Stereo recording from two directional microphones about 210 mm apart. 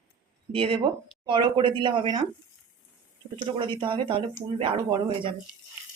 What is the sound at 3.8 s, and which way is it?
Speech, 25° right (ahead or behind).